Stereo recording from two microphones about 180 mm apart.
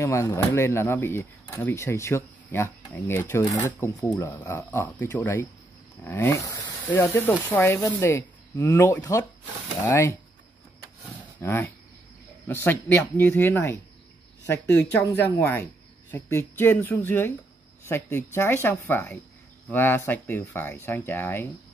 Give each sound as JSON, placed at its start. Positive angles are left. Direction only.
{"t": 0.0, "sound": "speech", "side_deg": 15}
{"t": 11.4, "sound": "speech", "side_deg": 10}
{"t": 15.0, "sound": "speech", "side_deg": 10}